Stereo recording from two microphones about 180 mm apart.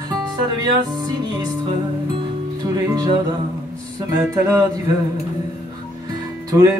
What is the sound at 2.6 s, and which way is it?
Music, 20° right (ahead or behind).